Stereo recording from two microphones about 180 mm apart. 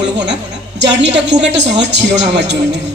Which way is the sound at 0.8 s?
75° right (ahead or behind).